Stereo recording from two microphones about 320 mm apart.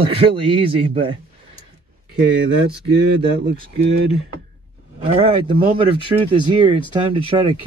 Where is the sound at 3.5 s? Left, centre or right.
Right.